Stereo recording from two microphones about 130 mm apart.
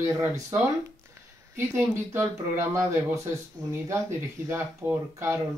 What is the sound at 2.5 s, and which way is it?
Speech, 20° right (ahead or behind).